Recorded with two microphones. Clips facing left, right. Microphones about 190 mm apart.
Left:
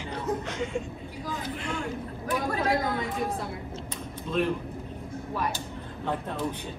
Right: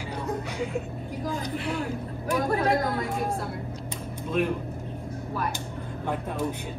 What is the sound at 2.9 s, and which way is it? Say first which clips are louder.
Speech: right 1 dB; centre (ahead or behind).